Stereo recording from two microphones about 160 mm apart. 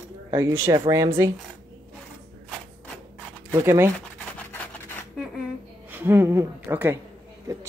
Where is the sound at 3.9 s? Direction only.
10° left (ahead or behind).